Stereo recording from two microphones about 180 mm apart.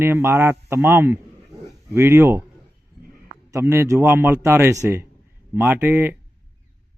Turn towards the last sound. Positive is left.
turn(degrees=-10)  # may be behind; listen again after turning